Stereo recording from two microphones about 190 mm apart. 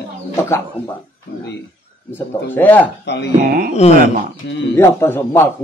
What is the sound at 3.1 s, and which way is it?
Speech, 65° left (ahead or behind).